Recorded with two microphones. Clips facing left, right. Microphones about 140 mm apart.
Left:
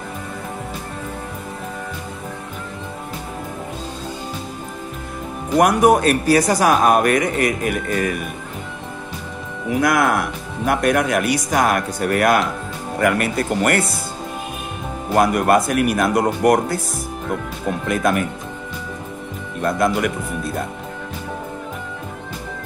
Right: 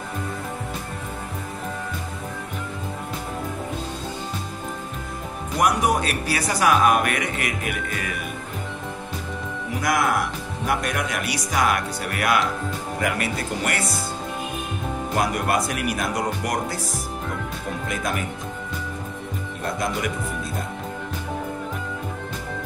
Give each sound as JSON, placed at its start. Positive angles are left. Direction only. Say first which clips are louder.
{"t": 5.6, "sound": "speech", "louder": "left 7 dB", "side_deg": 55}
{"t": 9.8, "sound": "speech", "louder": "left 5 dB", "side_deg": 60}
{"t": 15.1, "sound": "speech", "louder": "left 8 dB", "side_deg": 55}
{"t": 17.8, "sound": "speech", "louder": "left 9 dB", "side_deg": 55}